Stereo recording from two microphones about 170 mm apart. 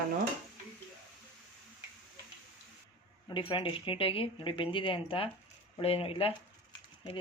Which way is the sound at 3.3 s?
30° left (ahead or behind).